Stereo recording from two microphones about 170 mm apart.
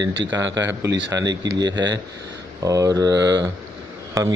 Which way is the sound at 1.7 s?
90° right.